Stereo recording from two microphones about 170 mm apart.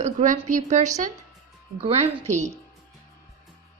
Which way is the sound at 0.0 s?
45° right (ahead or behind).